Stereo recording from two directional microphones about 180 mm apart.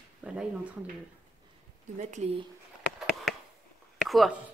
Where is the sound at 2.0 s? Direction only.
40° right (ahead or behind).